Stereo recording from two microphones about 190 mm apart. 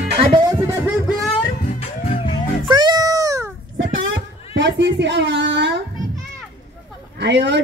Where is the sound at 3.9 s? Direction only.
75° right (ahead or behind).